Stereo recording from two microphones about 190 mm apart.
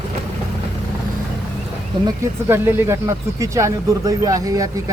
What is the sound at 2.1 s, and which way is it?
Speech, 15° right (ahead or behind).